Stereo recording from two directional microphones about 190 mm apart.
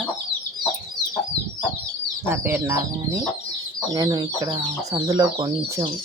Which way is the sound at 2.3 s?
10° right (ahead or behind).